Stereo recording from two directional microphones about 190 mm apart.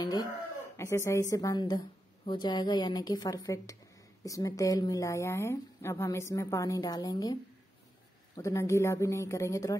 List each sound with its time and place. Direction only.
0.0 s a woman's voice: 20° left (ahead or behind)
8.4 s a woman's voice: 15° left (ahead or behind)